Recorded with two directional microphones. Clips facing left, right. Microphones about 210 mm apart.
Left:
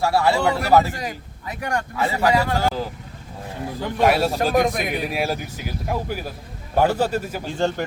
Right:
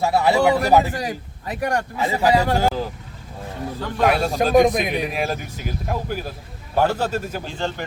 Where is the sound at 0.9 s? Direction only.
35° right (ahead or behind).